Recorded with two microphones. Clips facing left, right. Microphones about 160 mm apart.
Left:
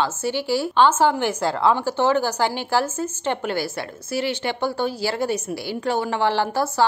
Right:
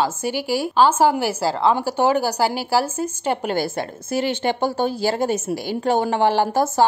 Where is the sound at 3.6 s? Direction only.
50° right (ahead or behind).